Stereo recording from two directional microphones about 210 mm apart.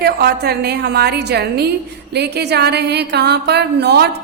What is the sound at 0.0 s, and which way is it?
A woman's voice, 50° right (ahead or behind).